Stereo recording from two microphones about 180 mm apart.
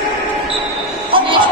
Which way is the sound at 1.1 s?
30° right (ahead or behind).